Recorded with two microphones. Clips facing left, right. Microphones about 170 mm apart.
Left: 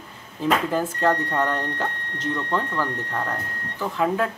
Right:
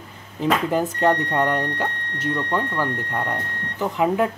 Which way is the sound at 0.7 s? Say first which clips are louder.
Right 2 dB; 15° right (ahead or behind).